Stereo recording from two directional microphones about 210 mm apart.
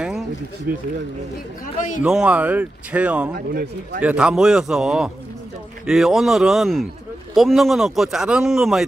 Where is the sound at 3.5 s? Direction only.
50° right (ahead or behind).